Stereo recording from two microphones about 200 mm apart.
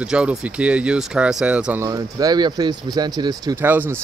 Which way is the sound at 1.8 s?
15° right (ahead or behind).